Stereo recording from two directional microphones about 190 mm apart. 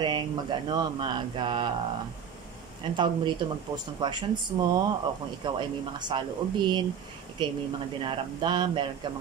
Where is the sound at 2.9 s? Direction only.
25° right (ahead or behind).